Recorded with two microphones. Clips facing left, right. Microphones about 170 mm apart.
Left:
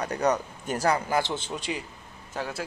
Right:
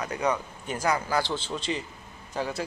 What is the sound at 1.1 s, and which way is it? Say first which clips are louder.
Speech: left 1 dB; 20° left (ahead or behind).